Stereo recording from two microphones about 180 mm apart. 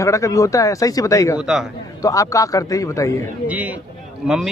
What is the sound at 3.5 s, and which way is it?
A man's voice, 10° right (ahead or behind).